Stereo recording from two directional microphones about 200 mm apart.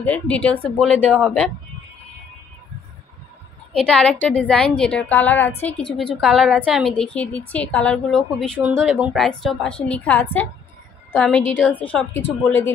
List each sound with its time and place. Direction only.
0.0 s a woman's voice: 5° left (ahead or behind)
3.7 s a woman's voice: 5° left (ahead or behind)